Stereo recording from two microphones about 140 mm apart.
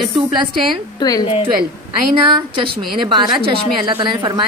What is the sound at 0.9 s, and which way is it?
Speech, 30° left (ahead or behind).